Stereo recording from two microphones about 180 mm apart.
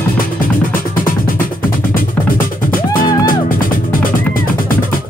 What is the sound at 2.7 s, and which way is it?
Music, 50° left (ahead or behind).